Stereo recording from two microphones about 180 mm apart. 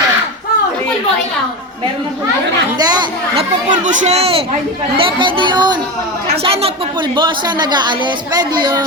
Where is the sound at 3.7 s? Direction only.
40° right (ahead or behind); by 5.7 s 25° right (ahead or behind).